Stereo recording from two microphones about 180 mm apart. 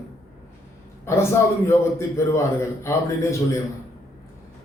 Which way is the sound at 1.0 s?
15° left (ahead or behind).